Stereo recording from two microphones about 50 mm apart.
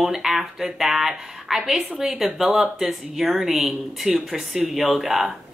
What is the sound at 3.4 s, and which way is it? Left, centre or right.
A woman's voice, centre.